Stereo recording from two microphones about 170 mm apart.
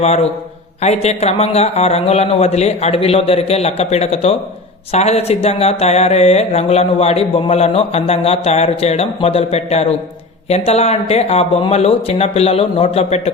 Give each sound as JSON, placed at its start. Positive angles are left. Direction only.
{"t": 0.0, "sound": "speech", "side_deg": 40}